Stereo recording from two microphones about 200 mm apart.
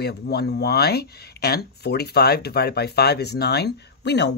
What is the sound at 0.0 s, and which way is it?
Speech, 55° left (ahead or behind).